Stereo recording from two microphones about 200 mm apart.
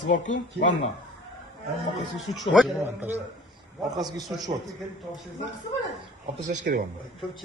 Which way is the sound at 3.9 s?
20° right (ahead or behind).